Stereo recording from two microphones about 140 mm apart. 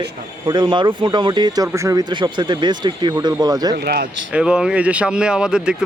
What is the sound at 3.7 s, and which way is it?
Speech, 90° right.